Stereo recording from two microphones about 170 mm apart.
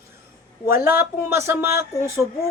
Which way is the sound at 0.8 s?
15° right (ahead or behind).